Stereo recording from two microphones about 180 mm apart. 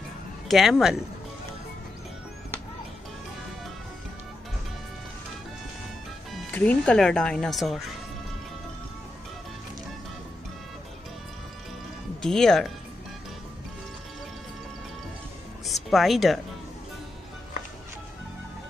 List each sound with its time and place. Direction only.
0.5 s speech: centre (ahead or behind)
6.3 s speech: 10° left (ahead or behind)
12.2 s speech: 5° left (ahead or behind)
15.6 s music: centre (ahead or behind)